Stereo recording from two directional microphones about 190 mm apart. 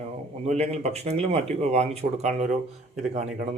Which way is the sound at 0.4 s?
35° right (ahead or behind).